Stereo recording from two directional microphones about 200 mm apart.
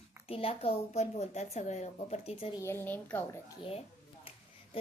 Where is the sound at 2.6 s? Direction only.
10° left (ahead or behind).